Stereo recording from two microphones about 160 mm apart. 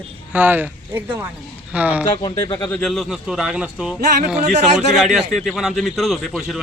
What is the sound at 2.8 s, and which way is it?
A man's voice, centre (ahead or behind).